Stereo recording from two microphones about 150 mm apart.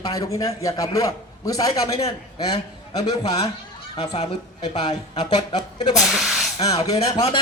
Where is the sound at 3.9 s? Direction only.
45° left (ahead or behind).